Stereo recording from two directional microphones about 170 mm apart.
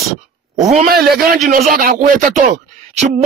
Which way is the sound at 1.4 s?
50° right (ahead or behind).